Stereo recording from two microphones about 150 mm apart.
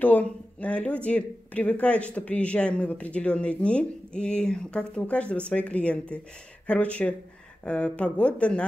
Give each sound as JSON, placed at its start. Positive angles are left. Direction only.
{"t": 0.0, "sound": "speech", "side_deg": 10}